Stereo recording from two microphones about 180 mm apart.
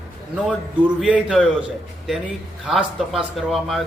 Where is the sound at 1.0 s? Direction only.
5° right (ahead or behind).